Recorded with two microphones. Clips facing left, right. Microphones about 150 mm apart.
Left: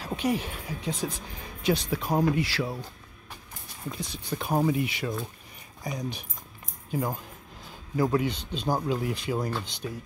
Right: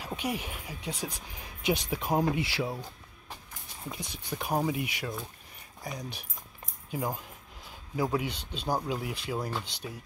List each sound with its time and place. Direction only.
0.0 s speech: 10° right (ahead or behind)
3.9 s speech: 15° right (ahead or behind)
7.9 s speech: 5° right (ahead or behind)